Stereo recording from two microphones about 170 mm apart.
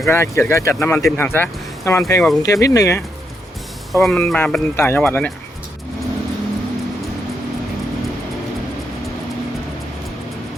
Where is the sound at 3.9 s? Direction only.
Centre (ahead or behind).